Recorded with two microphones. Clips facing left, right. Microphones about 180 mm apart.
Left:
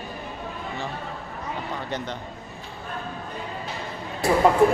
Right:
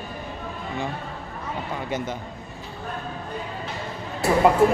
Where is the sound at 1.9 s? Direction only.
5° right (ahead or behind).